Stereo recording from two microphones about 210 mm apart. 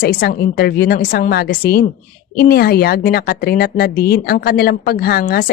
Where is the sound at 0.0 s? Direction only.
45° left (ahead or behind).